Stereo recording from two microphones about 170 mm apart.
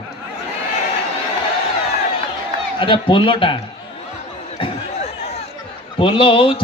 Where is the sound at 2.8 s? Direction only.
30° left (ahead or behind).